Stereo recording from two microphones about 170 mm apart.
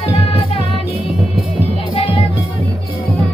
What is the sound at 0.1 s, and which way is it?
Music, 35° left (ahead or behind).